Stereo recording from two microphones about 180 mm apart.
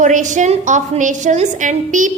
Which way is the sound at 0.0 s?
45° right (ahead or behind).